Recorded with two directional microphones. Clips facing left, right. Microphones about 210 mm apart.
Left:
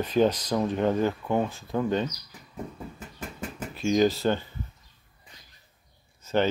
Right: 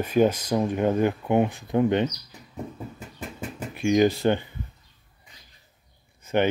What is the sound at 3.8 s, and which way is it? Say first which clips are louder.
Speech: right 3 dB; 15° right (ahead or behind).